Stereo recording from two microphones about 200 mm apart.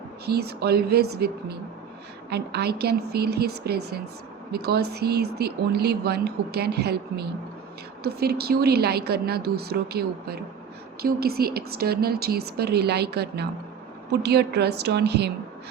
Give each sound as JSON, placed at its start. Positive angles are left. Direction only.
{"t": 0.3, "sound": "a woman's voice", "side_deg": -55}